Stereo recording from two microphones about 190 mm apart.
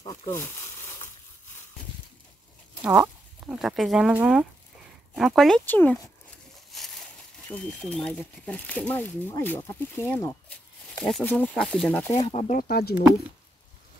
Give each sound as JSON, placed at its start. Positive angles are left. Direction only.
{"t": 0.0, "sound": "speech", "side_deg": 25}
{"t": 0.3, "sound": "a sound", "side_deg": 15}
{"t": 2.8, "sound": "speech", "side_deg": -5}
{"t": 6.7, "sound": "a sound", "side_deg": 0}
{"t": 7.5, "sound": "speech", "side_deg": 5}
{"t": 12.2, "sound": "speech", "side_deg": 30}
{"t": 12.5, "sound": "speech", "side_deg": 55}